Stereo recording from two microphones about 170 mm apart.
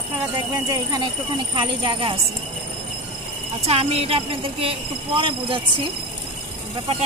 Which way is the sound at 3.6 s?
35° right (ahead or behind).